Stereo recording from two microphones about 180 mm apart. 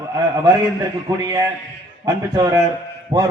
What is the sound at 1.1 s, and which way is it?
A man's voice, 20° right (ahead or behind).